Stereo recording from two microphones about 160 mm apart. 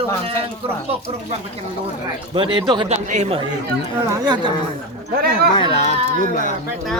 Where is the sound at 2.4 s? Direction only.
30° right (ahead or behind).